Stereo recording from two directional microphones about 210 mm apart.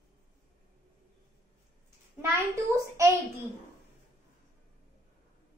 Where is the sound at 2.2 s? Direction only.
15° right (ahead or behind).